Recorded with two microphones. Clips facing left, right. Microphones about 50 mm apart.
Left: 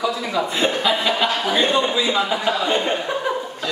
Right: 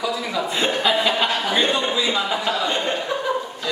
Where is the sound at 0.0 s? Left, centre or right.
Centre.